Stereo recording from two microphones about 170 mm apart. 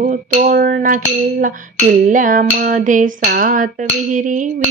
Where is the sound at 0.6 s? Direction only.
60° right (ahead or behind).